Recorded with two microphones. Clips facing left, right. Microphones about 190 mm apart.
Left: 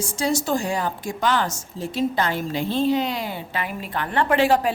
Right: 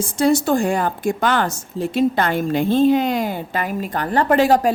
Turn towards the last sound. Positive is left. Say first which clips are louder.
# right 4 dB
turn(degrees=-40)  # may be behind; listen again after turning